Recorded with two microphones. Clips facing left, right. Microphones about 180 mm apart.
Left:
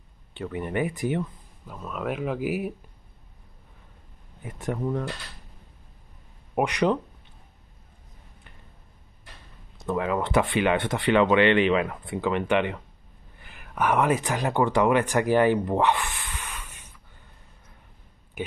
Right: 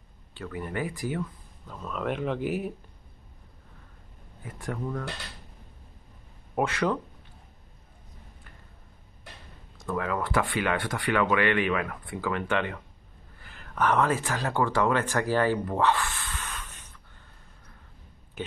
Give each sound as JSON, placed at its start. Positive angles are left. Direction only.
{"t": 0.3, "sound": "speech", "side_deg": 20}
{"t": 1.7, "sound": "speech", "side_deg": 5}
{"t": 4.4, "sound": "speech", "side_deg": 20}
{"t": 6.5, "sound": "speech", "side_deg": 15}
{"t": 9.8, "sound": "speech", "side_deg": 20}